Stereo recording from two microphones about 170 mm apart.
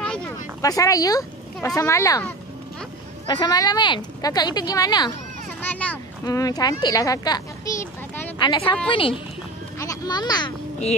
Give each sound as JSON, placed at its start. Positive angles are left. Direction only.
{"t": 0.6, "sound": "speech", "side_deg": 20}
{"t": 3.3, "sound": "speech", "side_deg": 20}
{"t": 5.6, "sound": "a child's voice", "side_deg": 10}
{"t": 6.2, "sound": "a child's voice", "side_deg": 20}
{"t": 9.8, "sound": "a sound", "side_deg": 20}